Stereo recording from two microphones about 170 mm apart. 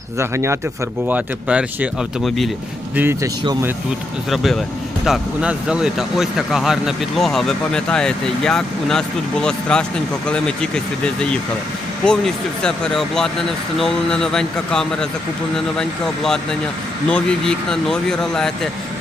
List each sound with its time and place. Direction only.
0.2 s speech: 15° right (ahead or behind); by 2.5 s centre (ahead or behind)
2.9 s speech: 10° right (ahead or behind)
4.3 s speech: centre (ahead or behind)